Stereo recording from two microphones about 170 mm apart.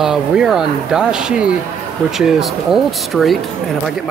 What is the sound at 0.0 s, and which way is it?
Speech, 5° right (ahead or behind).